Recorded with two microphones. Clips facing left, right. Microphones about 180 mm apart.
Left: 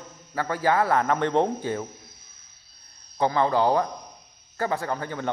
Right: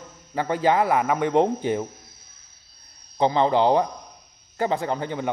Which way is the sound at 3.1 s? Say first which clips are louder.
Right 3 dB; 20° right (ahead or behind).